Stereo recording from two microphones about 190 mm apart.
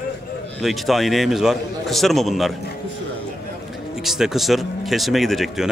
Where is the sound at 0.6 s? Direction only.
Centre (ahead or behind).